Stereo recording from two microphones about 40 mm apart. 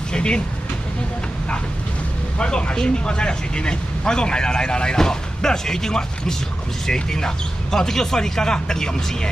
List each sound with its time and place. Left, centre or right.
0.1 s vehicle: left
2.3 s speech: left